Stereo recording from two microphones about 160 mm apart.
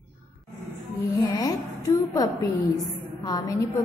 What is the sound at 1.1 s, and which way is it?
A woman's voice, 20° left (ahead or behind).